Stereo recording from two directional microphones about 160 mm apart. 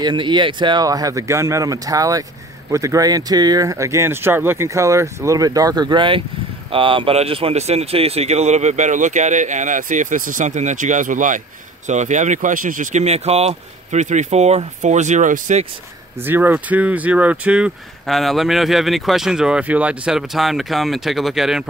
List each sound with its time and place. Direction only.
0.0 s speech: 30° right (ahead or behind); by 15.6 s 50° right (ahead or behind)
16.3 s speech: 10° right (ahead or behind)